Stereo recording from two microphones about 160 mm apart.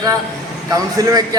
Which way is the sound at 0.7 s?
20° right (ahead or behind).